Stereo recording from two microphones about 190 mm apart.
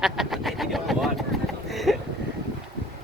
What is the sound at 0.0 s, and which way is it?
Pigeon, centre (ahead or behind).